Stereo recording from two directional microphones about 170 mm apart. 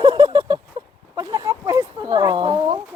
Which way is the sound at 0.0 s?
25° right (ahead or behind).